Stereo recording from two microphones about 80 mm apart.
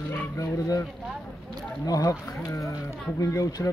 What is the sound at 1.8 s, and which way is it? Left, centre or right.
Speech, left.